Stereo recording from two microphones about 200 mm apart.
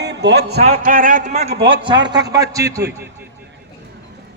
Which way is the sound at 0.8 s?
45° right (ahead or behind).